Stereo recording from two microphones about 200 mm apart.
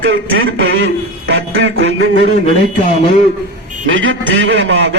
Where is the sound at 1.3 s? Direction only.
65° right (ahead or behind).